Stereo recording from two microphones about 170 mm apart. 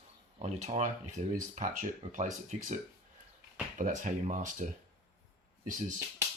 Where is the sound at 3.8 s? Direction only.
50° right (ahead or behind).